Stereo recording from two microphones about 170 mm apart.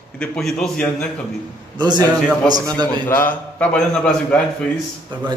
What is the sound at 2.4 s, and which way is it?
Speech, 25° right (ahead or behind).